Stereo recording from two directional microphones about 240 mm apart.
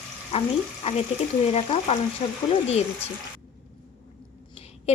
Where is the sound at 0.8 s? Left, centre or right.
Left.